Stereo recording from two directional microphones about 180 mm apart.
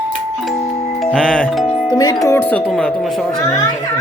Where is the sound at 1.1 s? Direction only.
5° left (ahead or behind).